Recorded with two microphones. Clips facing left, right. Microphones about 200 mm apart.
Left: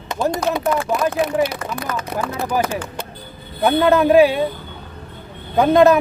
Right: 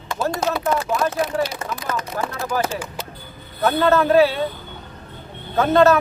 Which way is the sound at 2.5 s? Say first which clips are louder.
Left 2 dB; 15° left (ahead or behind).